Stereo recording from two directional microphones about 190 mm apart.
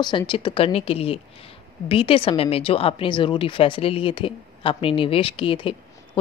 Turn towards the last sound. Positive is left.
turn(degrees=25)  # may be behind; listen again after turning